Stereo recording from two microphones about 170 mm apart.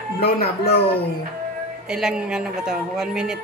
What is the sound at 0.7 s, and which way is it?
Speech, 35° left (ahead or behind).